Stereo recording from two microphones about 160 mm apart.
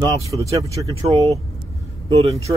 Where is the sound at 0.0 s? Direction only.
20° right (ahead or behind).